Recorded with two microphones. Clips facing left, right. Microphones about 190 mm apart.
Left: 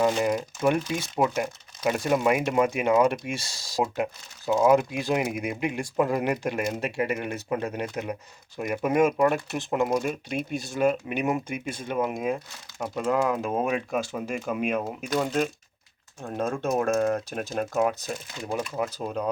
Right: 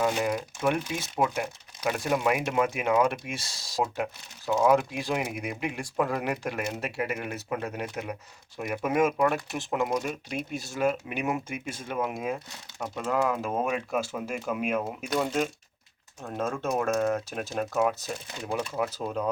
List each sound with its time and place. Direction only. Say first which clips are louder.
0.0 s speech: left 3 dB; 5° right (ahead or behind)
16.6 s speech: left 2 dB; centre (ahead or behind)